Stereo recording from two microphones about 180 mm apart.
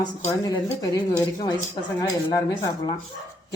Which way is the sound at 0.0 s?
20° left (ahead or behind).